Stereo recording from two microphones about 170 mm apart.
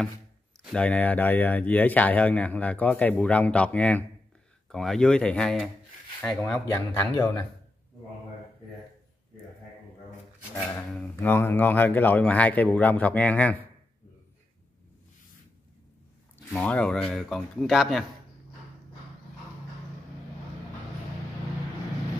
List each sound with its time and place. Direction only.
0.7 s speech: 5° left (ahead or behind)
6.7 s speech: 20° left (ahead or behind)
11.0 s speech: 10° left (ahead or behind)
16.5 s speech: 5° left (ahead or behind)